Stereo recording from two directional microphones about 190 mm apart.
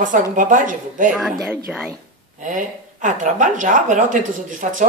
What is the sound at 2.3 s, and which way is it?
A woman's voice, 40° right (ahead or behind).